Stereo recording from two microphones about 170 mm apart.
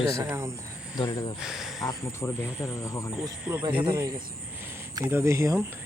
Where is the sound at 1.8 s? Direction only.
20° left (ahead or behind).